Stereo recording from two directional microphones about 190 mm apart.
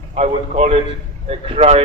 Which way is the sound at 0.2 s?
35° right (ahead or behind).